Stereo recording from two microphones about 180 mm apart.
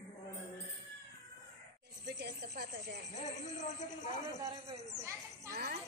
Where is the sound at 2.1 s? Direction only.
70° right (ahead or behind).